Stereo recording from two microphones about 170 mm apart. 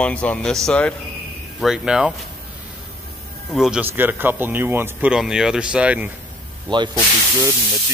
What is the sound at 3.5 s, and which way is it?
Speech, 5° right (ahead or behind).